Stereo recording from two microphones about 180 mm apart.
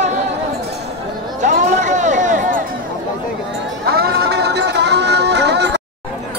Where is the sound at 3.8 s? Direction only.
60° right (ahead or behind).